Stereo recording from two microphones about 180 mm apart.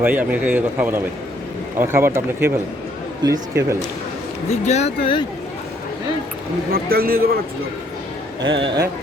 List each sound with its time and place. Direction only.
0.0 s a man's voice: 10° right (ahead or behind)
4.6 s speech: 40° left (ahead or behind)
6.7 s speech: 55° right (ahead or behind)
8.4 s a man's voice: 25° right (ahead or behind)